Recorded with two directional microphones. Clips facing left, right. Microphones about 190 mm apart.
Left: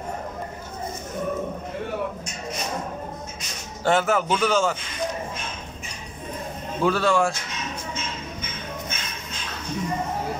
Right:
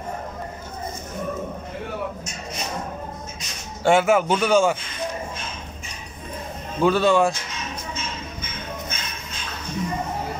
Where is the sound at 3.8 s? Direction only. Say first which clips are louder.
Right 4 dB; 10° right (ahead or behind).